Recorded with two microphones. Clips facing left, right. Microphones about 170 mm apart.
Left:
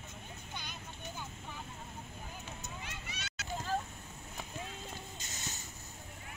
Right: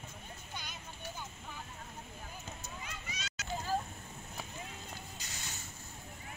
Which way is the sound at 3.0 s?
60° left (ahead or behind).